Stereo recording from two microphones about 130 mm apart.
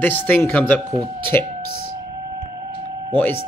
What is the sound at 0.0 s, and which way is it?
Speech, 15° left (ahead or behind).